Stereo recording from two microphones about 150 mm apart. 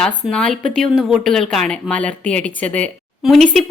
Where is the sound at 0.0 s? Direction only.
5° left (ahead or behind).